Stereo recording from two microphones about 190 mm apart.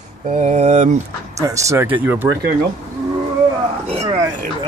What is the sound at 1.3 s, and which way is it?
Speech, 15° right (ahead or behind).